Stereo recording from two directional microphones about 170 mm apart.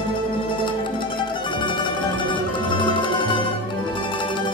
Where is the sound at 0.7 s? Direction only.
30° left (ahead or behind).